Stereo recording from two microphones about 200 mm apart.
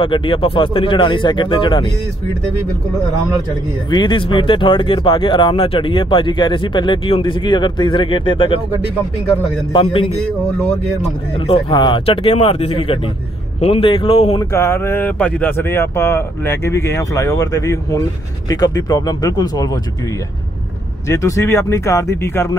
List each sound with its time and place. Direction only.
0.0 s speech: 25° left (ahead or behind)
3.9 s speech: 25° left (ahead or behind)
9.7 s speech: 25° left (ahead or behind)
14.4 s speech: 15° left (ahead or behind)
21.1 s speech: 15° left (ahead or behind)